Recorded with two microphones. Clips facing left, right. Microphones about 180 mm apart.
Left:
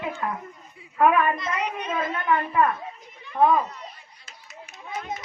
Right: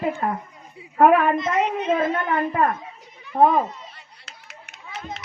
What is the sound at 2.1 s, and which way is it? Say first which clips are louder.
Speech: right 1 dB; 40° right (ahead or behind).